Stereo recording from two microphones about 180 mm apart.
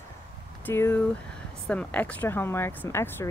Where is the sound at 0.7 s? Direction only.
10° left (ahead or behind).